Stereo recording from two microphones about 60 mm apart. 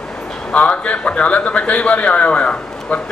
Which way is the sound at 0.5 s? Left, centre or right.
Left.